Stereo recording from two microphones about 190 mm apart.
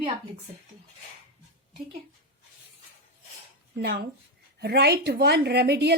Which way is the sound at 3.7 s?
60° right (ahead or behind).